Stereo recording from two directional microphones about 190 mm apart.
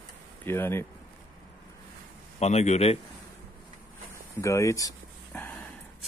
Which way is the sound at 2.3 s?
35° left (ahead or behind).